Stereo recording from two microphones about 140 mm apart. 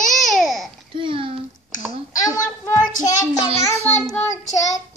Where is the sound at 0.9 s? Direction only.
40° right (ahead or behind).